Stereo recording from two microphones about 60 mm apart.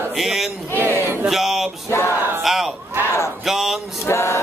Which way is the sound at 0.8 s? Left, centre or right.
Right.